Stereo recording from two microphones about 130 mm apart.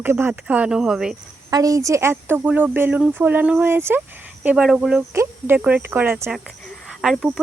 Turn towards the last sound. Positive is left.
turn(degrees=0)  # may be behind; listen again after turning